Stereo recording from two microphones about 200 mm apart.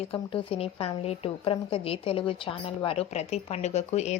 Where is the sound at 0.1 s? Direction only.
25° left (ahead or behind).